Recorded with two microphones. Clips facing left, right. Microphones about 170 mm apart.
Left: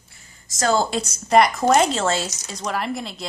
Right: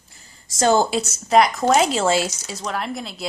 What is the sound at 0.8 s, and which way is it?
Speech, 5° right (ahead or behind).